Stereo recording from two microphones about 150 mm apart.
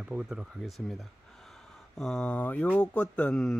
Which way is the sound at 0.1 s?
5° right (ahead or behind).